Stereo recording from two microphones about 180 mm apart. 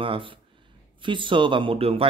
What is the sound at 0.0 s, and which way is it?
Speech, 30° right (ahead or behind).